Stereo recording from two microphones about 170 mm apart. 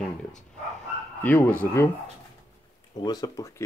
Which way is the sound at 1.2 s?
10° left (ahead or behind).